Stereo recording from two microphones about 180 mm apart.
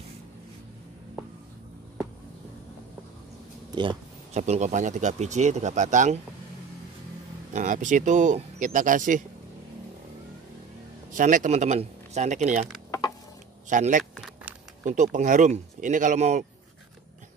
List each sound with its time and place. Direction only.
4.3 s speech: 40° right (ahead or behind)
7.5 s speech: 45° right (ahead or behind)
11.1 s speech: 45° right (ahead or behind)
13.7 s speech: 45° right (ahead or behind)